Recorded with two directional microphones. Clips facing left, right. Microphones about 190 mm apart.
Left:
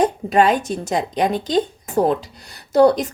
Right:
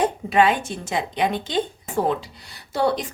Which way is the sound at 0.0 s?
40° left (ahead or behind).